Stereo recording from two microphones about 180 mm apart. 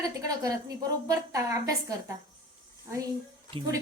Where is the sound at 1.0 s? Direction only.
20° right (ahead or behind).